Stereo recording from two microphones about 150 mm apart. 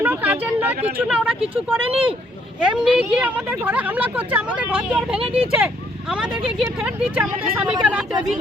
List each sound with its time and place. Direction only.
0.0 s speech: 10° right (ahead or behind)
1.9 s speech: 40° right (ahead or behind)
2.6 s speech: 5° right (ahead or behind)
5.2 s speech: 40° right (ahead or behind)
5.6 s speech: 5° right (ahead or behind)